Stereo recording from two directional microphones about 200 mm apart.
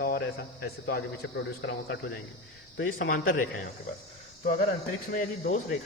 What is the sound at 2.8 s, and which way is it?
Speech, 75° left (ahead or behind).